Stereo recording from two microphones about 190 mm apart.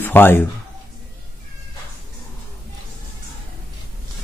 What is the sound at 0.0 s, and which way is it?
Speech, 10° left (ahead or behind).